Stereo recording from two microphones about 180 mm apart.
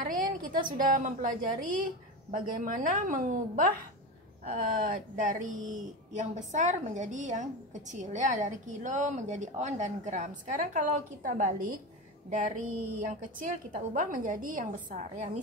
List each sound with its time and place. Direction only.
0.0 s speech: 50° right (ahead or behind)